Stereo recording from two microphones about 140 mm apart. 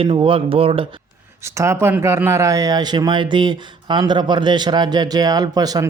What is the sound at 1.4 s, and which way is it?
Speech, 20° right (ahead or behind).